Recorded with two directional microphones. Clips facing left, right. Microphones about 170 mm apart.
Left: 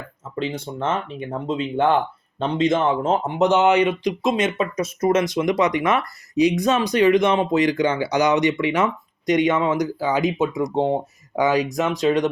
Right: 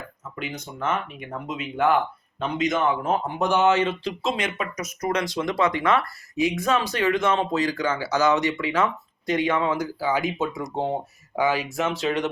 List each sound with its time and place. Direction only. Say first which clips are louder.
0.3 s speech: left 7 dB; 30° left (ahead or behind)